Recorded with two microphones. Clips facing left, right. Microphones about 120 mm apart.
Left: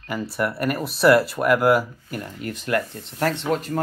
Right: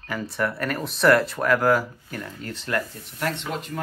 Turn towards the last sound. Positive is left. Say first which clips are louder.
# left 7 dB
turn(degrees=40)  # may be behind; listen again after turning